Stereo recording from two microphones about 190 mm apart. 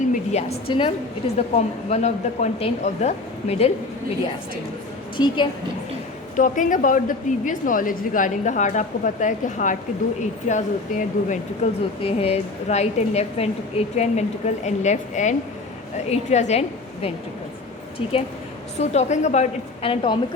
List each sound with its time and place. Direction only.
0.1 s a woman's voice: 35° left (ahead or behind)
5.1 s a woman's voice: 25° left (ahead or behind)
6.3 s a woman's voice: 40° left (ahead or behind)